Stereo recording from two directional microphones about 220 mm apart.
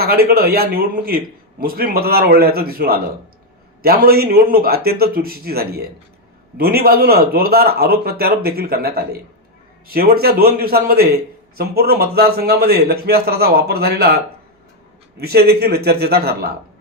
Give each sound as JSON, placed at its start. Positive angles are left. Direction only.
{"t": 0.0, "sound": "a man's voice", "side_deg": -45}
{"t": 15.2, "sound": "a man's voice", "side_deg": -45}